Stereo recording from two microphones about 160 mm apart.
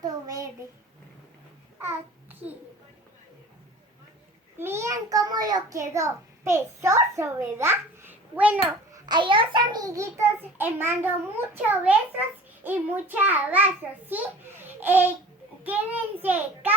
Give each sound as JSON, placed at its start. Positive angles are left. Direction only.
{"t": 0.0, "sound": "child singing", "side_deg": -25}
{"t": 1.8, "sound": "babbling", "side_deg": -10}
{"t": 4.5, "sound": "a child's voice", "side_deg": -15}
{"t": 8.9, "sound": "a child's voice", "side_deg": -30}